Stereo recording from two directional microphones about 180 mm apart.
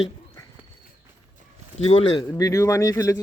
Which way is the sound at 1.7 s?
35° left (ahead or behind).